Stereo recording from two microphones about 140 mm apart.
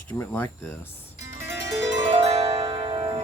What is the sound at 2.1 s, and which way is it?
Harp, 45° right (ahead or behind).